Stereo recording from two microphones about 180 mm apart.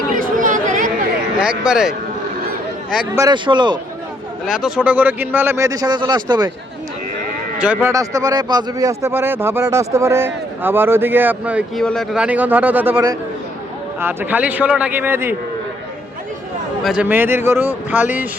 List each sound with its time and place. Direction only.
0.1 s chatter: 50° right (ahead or behind)
1.4 s speech: 5° right (ahead or behind)
3.2 s speech: 25° right (ahead or behind)
4.6 s speech: 5° right (ahead or behind); by 6.5 s 25° right (ahead or behind)
7.6 s speech: 10° right (ahead or behind)
11.8 s speech: 5° left (ahead or behind)
16.8 s speech: 5° right (ahead or behind)